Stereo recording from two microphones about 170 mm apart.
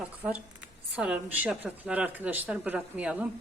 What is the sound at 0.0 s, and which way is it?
A woman's voice, 10° right (ahead or behind).